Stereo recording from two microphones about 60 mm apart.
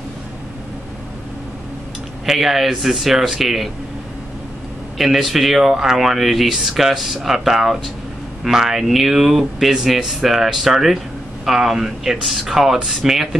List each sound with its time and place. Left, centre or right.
2.2 s speech: centre
4.9 s speech: centre